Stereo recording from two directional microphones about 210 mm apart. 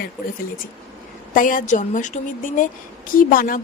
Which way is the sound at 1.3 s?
40° left (ahead or behind).